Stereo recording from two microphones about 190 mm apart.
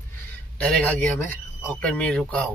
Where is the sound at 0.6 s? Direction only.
5° left (ahead or behind).